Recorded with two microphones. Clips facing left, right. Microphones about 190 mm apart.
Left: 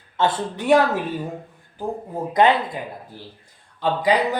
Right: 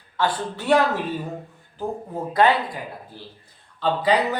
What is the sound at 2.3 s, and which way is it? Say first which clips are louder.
Speech: left 2 dB; 20° left (ahead or behind).